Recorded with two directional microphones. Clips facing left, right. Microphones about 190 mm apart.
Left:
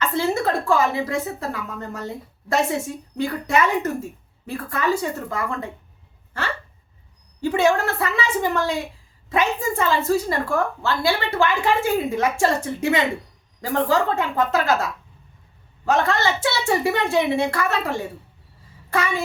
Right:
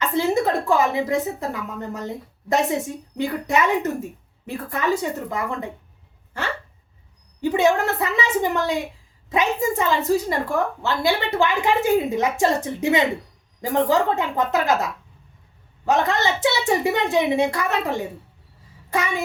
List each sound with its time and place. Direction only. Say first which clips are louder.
0.0 s a woman's voice: right 1 dB; 15° right (ahead or behind)
7.4 s a woman's voice: right 1 dB; 20° right (ahead or behind)